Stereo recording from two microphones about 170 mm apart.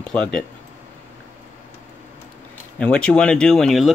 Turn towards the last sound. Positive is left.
turn(degrees=0)  # may be behind; listen again after turning